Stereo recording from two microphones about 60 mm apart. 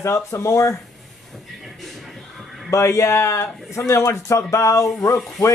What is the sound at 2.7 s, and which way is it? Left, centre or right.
A man's voice, left.